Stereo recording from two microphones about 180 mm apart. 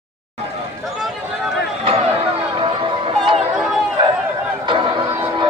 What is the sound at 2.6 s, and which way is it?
Music, 30° right (ahead or behind).